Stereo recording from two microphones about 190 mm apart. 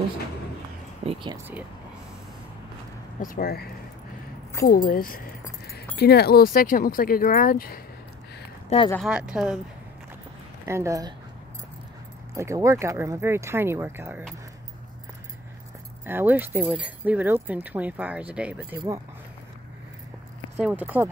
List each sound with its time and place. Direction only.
1.0 s speech: 30° right (ahead or behind)
3.2 s speech: 50° left (ahead or behind)
4.6 s speech: 20° left (ahead or behind)
4.8 s speech: 50° left (ahead or behind)
8.6 s speech: 30° left (ahead or behind)
8.9 s speech: 5° right (ahead or behind)
10.6 s speech: 15° right (ahead or behind)
12.4 s speech: 15° right (ahead or behind)
16.1 s speech: 10° right (ahead or behind)
20.5 s speech: 5° right (ahead or behind)